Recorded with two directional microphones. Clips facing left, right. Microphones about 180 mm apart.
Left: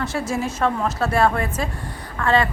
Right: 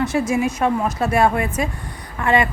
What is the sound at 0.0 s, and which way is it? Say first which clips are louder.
A woman's voice: right 5 dB; 15° right (ahead or behind).